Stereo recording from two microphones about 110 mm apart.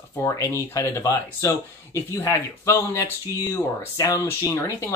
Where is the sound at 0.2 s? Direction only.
25° left (ahead or behind).